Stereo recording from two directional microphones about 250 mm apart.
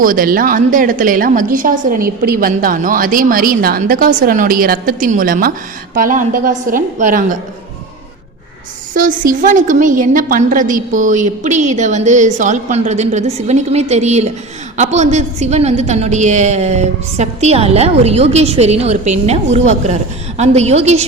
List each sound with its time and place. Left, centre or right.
0.0 s a woman's voice: right
9.0 s a woman's voice: right